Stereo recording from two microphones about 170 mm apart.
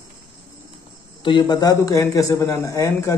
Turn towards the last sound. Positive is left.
turn(degrees=20)  # may be behind; listen again after turning